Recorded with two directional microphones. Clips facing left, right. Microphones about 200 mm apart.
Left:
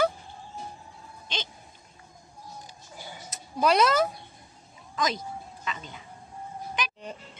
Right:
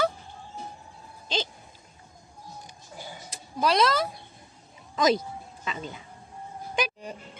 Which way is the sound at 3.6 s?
10° left (ahead or behind).